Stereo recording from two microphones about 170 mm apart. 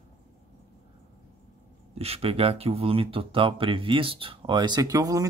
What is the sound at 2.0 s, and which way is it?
Speech, 35° right (ahead or behind).